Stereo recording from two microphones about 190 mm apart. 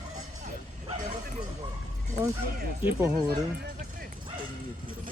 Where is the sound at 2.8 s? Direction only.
15° right (ahead or behind).